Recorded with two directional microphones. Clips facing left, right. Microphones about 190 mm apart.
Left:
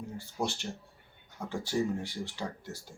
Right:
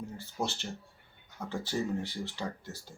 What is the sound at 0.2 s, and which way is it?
Speech, 15° left (ahead or behind).